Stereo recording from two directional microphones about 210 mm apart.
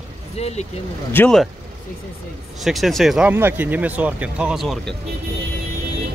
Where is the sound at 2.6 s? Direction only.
Centre (ahead or behind).